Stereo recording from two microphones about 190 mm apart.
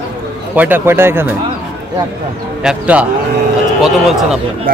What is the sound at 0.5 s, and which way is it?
Speech, 10° right (ahead or behind).